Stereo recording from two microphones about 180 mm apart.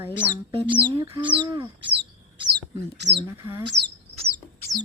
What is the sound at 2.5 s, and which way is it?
Speech, 70° right (ahead or behind).